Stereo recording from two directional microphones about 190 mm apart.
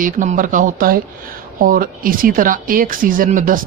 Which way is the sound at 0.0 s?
45° right (ahead or behind).